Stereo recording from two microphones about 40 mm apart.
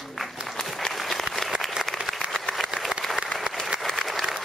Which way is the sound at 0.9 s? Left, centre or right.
Centre.